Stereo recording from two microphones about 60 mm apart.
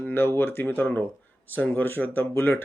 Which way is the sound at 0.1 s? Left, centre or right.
Left.